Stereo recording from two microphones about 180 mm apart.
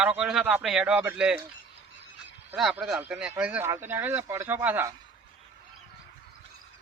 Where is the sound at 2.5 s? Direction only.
5° right (ahead or behind).